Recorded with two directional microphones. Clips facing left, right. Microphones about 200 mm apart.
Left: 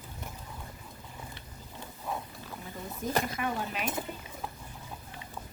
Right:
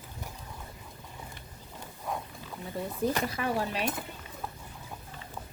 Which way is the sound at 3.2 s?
35° right (ahead or behind).